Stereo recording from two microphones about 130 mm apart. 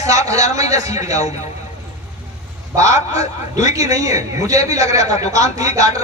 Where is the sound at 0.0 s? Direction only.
25° right (ahead or behind).